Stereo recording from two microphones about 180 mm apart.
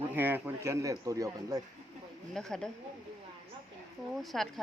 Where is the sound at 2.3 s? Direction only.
5° left (ahead or behind).